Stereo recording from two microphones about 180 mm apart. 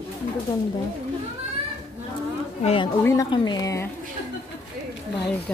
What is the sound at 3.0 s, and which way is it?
Speech, 15° left (ahead or behind).